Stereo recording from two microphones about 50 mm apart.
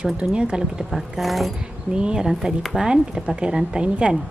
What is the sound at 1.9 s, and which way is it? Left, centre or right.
A woman's voice, centre.